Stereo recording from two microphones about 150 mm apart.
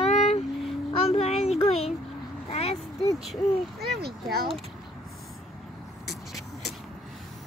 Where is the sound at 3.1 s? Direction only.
Centre (ahead or behind).